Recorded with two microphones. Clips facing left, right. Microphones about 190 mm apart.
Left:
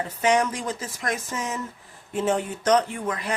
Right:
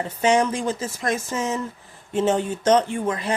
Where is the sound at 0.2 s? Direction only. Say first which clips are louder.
Right 3 dB; 25° right (ahead or behind).